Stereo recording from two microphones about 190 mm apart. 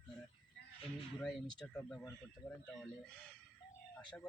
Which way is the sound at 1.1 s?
5° left (ahead or behind).